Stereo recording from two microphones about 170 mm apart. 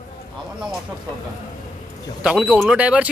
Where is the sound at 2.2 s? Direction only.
5° right (ahead or behind).